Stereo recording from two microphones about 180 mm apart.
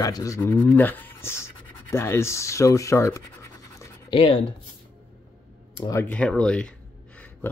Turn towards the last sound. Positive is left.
turn(degrees=10)  # may be behind; listen again after turning